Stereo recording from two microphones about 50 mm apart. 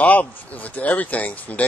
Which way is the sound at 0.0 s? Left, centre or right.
Left.